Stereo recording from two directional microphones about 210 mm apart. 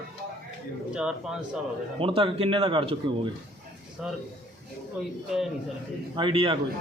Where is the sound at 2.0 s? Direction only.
25° right (ahead or behind).